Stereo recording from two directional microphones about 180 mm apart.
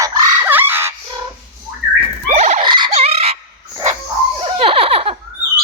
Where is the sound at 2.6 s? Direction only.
25° right (ahead or behind).